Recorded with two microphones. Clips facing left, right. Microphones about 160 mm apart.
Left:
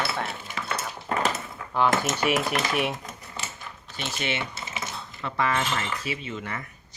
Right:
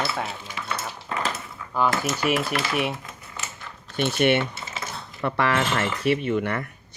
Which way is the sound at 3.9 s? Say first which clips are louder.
Right 10 dB; 60° right (ahead or behind).